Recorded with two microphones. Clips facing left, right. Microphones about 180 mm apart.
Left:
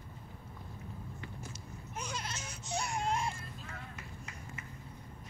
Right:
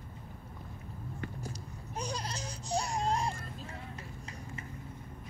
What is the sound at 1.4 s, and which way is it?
Baby cry, 35° right (ahead or behind).